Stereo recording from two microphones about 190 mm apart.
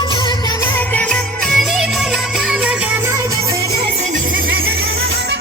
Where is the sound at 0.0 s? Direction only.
25° left (ahead or behind).